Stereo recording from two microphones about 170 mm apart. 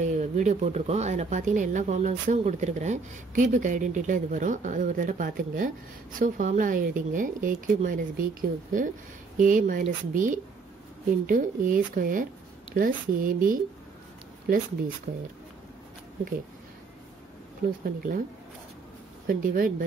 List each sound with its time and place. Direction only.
0.0 s speech: 45° right (ahead or behind)
15.1 s speech: 50° right (ahead or behind)
17.8 s speech: 60° right (ahead or behind)
19.2 s speech: 60° right (ahead or behind)